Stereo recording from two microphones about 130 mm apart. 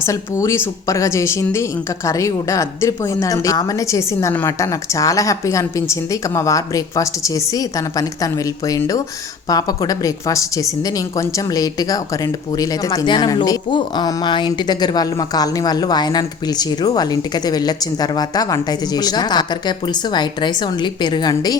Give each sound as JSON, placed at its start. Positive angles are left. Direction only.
{"t": 0.0, "sound": "a woman's voice", "side_deg": 20}